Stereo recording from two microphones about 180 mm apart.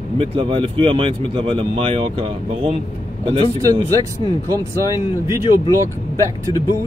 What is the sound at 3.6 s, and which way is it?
Speech, 20° right (ahead or behind).